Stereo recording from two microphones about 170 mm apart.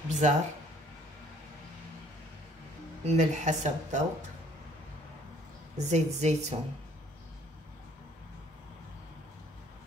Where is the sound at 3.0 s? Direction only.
45° right (ahead or behind).